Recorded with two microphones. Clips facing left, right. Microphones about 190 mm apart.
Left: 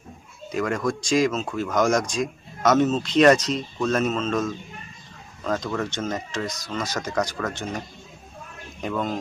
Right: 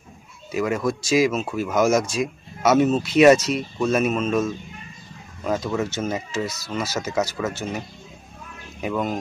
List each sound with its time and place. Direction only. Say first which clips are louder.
0.5 s speech: right 2 dB; 5° right (ahead or behind)
8.8 s speech: right 2 dB; 10° right (ahead or behind)